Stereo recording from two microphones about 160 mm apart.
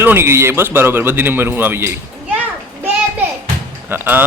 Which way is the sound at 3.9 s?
10° right (ahead or behind).